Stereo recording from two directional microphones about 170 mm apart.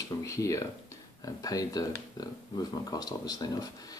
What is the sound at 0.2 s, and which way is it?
Speech, 20° left (ahead or behind).